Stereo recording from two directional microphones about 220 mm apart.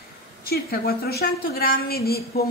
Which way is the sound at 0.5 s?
45° left (ahead or behind).